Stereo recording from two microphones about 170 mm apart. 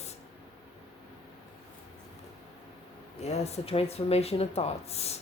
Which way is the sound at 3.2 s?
40° left (ahead or behind).